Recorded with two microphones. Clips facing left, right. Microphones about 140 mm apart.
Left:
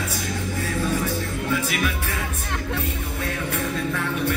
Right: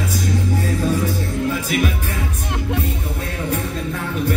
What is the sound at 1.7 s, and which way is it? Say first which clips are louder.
Music: right 5 dB; 35° right (ahead or behind).